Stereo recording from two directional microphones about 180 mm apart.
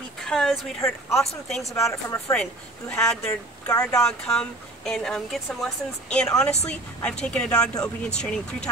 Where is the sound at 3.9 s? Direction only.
5° left (ahead or behind).